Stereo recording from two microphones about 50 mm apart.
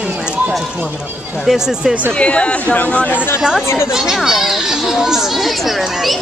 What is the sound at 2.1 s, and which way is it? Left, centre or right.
Speech, left.